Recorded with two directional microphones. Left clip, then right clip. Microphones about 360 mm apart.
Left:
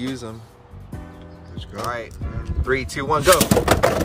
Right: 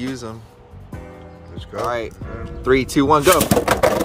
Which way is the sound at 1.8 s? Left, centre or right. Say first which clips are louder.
Right 4 dB; centre.